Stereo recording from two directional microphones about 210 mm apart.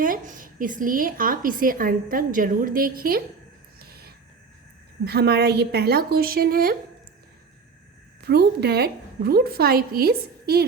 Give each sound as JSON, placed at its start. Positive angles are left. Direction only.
{"t": 0.0, "sound": "a woman's voice", "side_deg": -40}
{"t": 3.8, "sound": "a sound", "side_deg": -45}
{"t": 5.0, "sound": "a woman's voice", "side_deg": -50}
{"t": 8.2, "sound": "a woman's voice", "side_deg": -50}